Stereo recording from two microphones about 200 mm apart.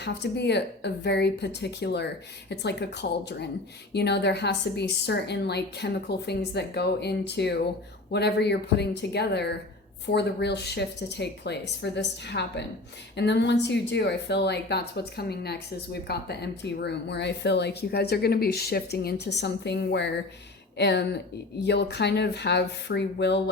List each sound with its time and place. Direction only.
0.0 s speech: 60° left (ahead or behind)